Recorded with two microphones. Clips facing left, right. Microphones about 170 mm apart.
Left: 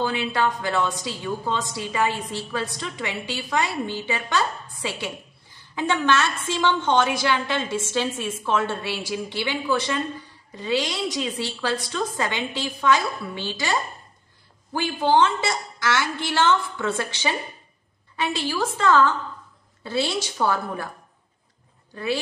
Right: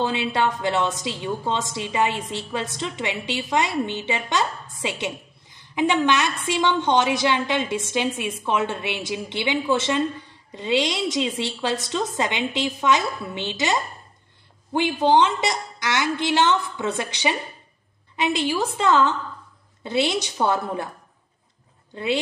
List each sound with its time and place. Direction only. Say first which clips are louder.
0.0 s a woman's voice: right 1 dB; 25° right (ahead or behind)
21.9 s speech: right 2 dB; 20° right (ahead or behind)